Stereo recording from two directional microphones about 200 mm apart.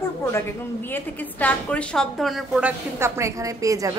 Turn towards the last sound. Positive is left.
turn(degrees=-15)  # may be behind; listen again after turning